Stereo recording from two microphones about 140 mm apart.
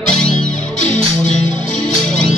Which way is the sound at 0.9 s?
60° left (ahead or behind).